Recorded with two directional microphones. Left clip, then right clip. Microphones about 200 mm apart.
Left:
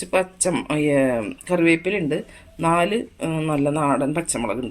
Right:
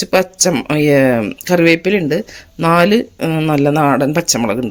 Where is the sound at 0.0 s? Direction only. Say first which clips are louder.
Right 8 dB; 45° right (ahead or behind).